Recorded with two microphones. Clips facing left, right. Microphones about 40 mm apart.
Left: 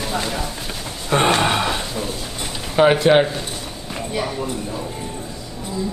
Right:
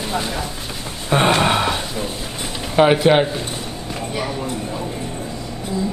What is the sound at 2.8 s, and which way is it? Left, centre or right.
Speech, centre.